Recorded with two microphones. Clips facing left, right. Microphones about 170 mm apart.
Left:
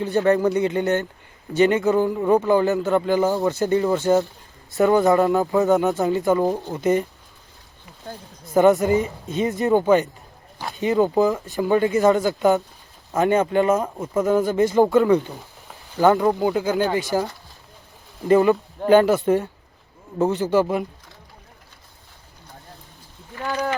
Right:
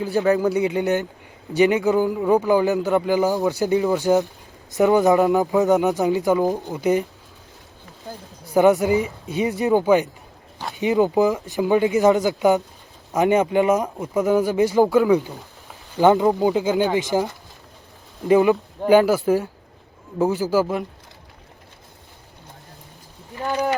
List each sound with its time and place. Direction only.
0.0 s speech: centre (ahead or behind)
1.8 s speech: 5° right (ahead or behind)
8.5 s speech: 10° right (ahead or behind)
16.0 s speech: 15° right (ahead or behind)
18.3 s speech: 5° right (ahead or behind)
23.3 s speech: 15° right (ahead or behind)